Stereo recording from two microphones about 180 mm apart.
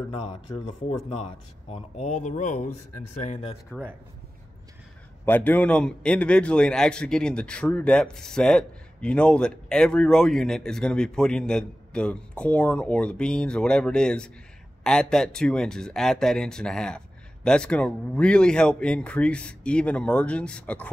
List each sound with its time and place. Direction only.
0.1 s speech: 35° left (ahead or behind)
5.2 s a man's voice: 10° left (ahead or behind)